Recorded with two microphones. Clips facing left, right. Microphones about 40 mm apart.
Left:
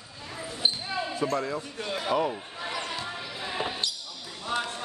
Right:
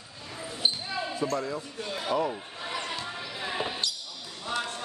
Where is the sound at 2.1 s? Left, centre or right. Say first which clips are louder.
Left 1 dB; left.